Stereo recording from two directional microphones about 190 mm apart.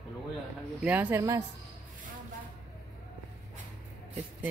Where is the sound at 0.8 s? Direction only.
10° right (ahead or behind).